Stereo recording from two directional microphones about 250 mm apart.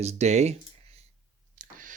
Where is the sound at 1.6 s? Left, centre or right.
Right.